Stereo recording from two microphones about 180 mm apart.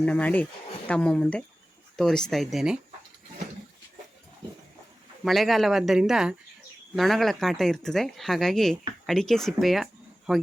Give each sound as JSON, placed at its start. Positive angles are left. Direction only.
{"t": 0.0, "sound": "speech", "side_deg": 5}
{"t": 5.2, "sound": "speech", "side_deg": 0}